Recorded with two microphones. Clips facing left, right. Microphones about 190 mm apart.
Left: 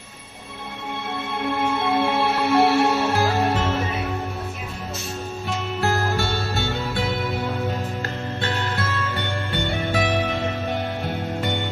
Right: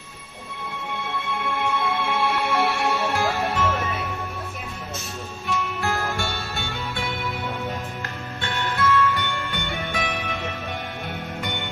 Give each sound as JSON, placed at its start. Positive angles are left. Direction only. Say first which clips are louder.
{"t": 1.3, "sound": "music", "louder": "left 3 dB", "side_deg": 35}
{"t": 5.6, "sound": "music", "louder": "left 4 dB", "side_deg": 30}
{"t": 8.4, "sound": "music", "louder": "right 2 dB", "side_deg": 30}